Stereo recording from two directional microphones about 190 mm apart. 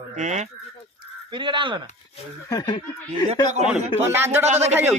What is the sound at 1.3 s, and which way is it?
Speech, 25° right (ahead or behind).